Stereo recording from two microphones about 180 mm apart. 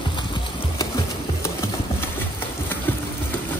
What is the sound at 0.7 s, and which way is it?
Engine, 20° left (ahead or behind).